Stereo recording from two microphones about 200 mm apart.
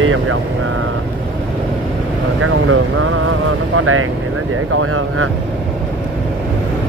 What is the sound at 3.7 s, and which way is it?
Speech, 90° right.